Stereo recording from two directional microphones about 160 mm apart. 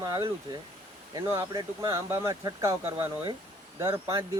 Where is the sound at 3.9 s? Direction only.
15° right (ahead or behind).